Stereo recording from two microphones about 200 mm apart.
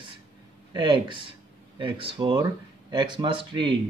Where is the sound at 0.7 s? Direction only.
25° right (ahead or behind).